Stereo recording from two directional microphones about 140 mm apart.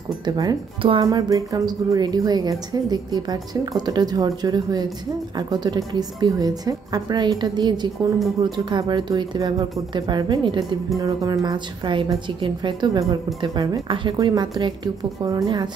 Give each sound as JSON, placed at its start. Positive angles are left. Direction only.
{"t": 0.2, "sound": "a woman's voice", "side_deg": -30}